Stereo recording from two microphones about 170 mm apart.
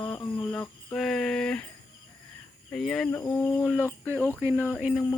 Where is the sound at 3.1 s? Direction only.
15° left (ahead or behind).